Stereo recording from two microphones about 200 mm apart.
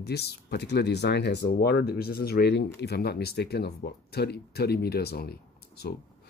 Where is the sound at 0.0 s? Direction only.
55° left (ahead or behind).